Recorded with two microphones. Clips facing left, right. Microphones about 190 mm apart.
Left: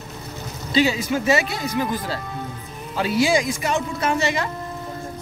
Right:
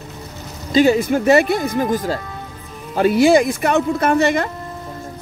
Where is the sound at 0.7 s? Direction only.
50° right (ahead or behind).